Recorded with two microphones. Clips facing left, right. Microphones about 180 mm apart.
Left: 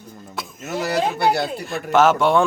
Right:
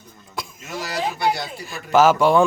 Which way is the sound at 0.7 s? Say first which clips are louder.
Left 5 dB; 60° left (ahead or behind).